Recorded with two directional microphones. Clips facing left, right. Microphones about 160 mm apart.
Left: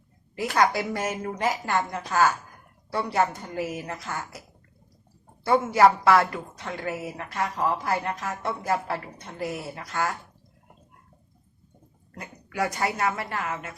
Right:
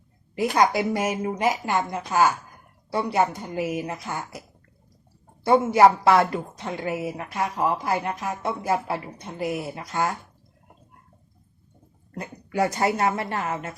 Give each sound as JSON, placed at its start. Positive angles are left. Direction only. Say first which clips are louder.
{"t": 0.3, "sound": "a woman's voice", "louder": "right 3 dB", "side_deg": -15}
{"t": 5.5, "sound": "a woman's voice", "louder": "right 3 dB", "side_deg": -20}
{"t": 12.1, "sound": "speech", "louder": "right 5 dB", "side_deg": -30}